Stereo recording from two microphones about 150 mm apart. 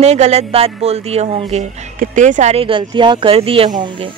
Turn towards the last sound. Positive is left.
turn(degrees=-35)  # may be behind; listen again after turning